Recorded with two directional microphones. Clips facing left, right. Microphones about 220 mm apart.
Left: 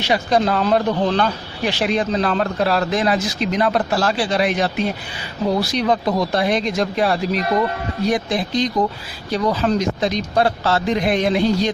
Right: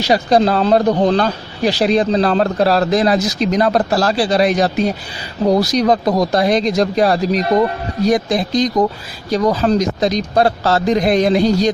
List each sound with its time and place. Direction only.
0.0 s speech: 35° right (ahead or behind)